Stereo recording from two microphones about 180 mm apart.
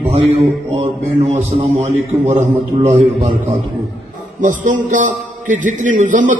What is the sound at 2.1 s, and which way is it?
Speech, 15° right (ahead or behind).